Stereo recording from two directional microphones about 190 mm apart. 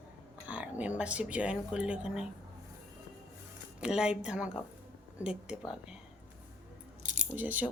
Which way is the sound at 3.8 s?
5° right (ahead or behind).